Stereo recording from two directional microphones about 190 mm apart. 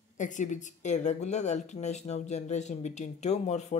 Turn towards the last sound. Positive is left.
turn(degrees=35)  # may be behind; listen again after turning